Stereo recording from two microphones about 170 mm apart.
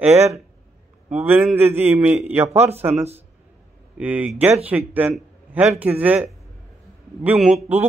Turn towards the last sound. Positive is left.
turn(degrees=0)  # may be behind; listen again after turning